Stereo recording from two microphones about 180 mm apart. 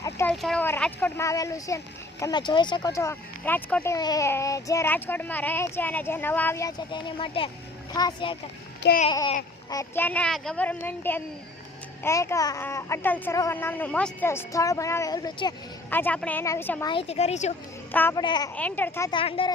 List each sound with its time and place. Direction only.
0.0 s a sound: 15° left (ahead or behind)
0.4 s speech: 10° left (ahead or behind)
3.9 s speech: 20° left (ahead or behind)
9.6 s speech: 15° left (ahead or behind)
15.9 s speech: 10° left (ahead or behind)
16.8 s a woman's voice: 30° left (ahead or behind)
17.9 s speech: 10° left (ahead or behind)
18.2 s speech: 25° left (ahead or behind)
18.5 s speech: 10° left (ahead or behind)
19.1 s speech: 30° left (ahead or behind)